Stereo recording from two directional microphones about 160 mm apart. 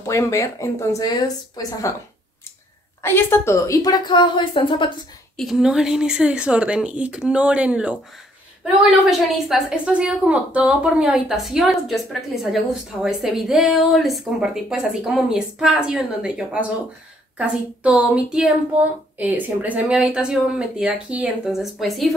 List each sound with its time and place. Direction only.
0.0 s a woman's voice: 20° left (ahead or behind)
3.0 s a woman's voice: 15° left (ahead or behind); by 4.9 s 30° left (ahead or behind)
5.4 s speech: 5° right (ahead or behind)
9.3 s speech: centre (ahead or behind)